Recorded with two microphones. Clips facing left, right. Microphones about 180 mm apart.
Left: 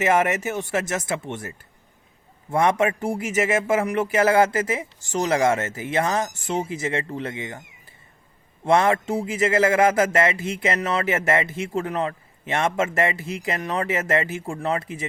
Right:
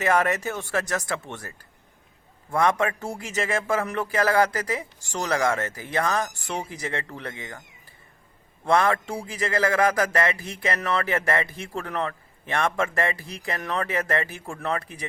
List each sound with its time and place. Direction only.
0.0 s a man's voice: 20° left (ahead or behind)